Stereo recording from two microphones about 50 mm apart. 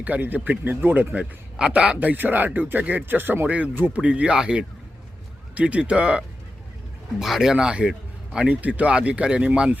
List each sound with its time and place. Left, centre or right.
0.0 s a man's voice: right
7.2 s speech: centre
7.5 s speech: centre
8.4 s speech: right